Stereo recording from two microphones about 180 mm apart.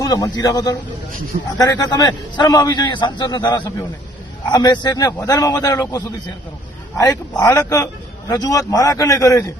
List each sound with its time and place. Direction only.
0.0 s a man's voice: 20° left (ahead or behind)